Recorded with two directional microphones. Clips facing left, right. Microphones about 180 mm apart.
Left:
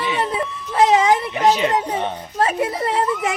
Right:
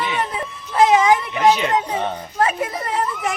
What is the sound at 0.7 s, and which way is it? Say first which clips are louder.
Baby cry: even; 30° left (ahead or behind).